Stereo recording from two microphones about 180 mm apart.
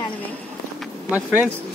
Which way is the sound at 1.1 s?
10° right (ahead or behind).